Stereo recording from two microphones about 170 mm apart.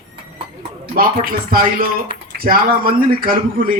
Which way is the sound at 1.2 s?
55° right (ahead or behind).